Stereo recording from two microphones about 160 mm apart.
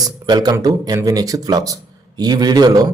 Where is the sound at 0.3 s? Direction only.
25° right (ahead or behind).